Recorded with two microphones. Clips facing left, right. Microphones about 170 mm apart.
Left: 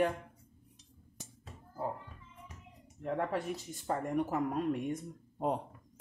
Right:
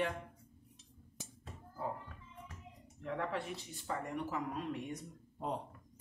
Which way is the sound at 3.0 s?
45° left (ahead or behind).